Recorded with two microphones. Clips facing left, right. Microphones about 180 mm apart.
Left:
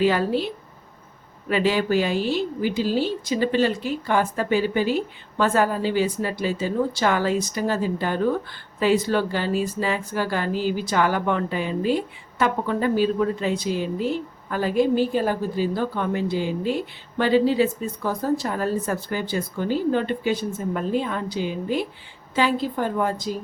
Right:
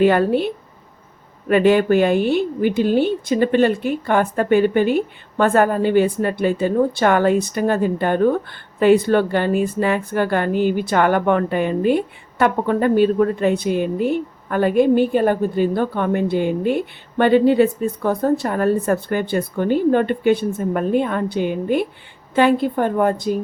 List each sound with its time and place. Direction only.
0.0 s a woman's voice: 55° right (ahead or behind)